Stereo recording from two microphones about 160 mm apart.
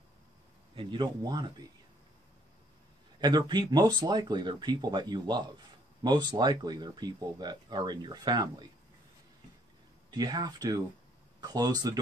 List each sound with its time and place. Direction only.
0.7 s speech: 30° right (ahead or behind)
3.2 s speech: 25° right (ahead or behind)
10.1 s speech: 25° right (ahead or behind)